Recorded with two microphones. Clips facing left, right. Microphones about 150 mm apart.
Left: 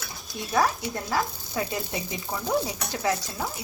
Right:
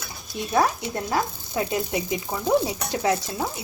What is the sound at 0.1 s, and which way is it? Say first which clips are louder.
Speech: right 3 dB; 20° right (ahead or behind).